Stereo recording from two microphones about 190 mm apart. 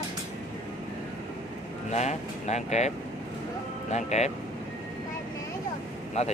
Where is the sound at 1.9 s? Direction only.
35° left (ahead or behind).